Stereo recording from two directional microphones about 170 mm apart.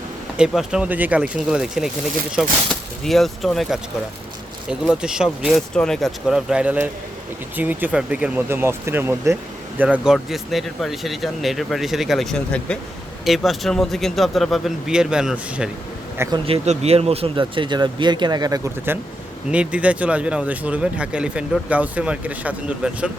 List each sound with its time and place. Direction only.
0.3 s speech: 5° right (ahead or behind)
16.3 s speech: 35° right (ahead or behind); by 18.9 s 20° right (ahead or behind)
19.5 s speech: 5° right (ahead or behind)